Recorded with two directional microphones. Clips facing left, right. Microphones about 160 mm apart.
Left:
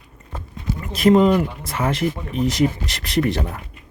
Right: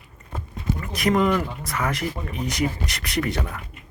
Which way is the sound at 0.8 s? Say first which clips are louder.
Left 7 dB; 25° left (ahead or behind).